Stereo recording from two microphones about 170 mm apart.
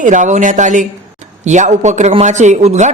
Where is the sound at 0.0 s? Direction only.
45° right (ahead or behind).